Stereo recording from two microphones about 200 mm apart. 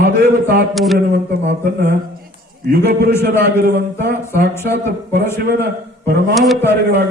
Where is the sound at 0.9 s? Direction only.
55° right (ahead or behind).